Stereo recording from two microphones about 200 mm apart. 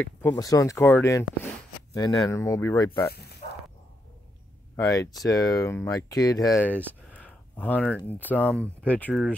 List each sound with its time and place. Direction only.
0.0 s speech: 5° left (ahead or behind)
0.4 s speech: 15° left (ahead or behind)
3.1 s speech: 55° left (ahead or behind)
4.7 s speech: 15° left (ahead or behind)